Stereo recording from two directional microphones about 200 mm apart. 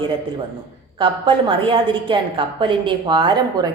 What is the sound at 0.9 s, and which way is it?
A woman's voice, 25° right (ahead or behind).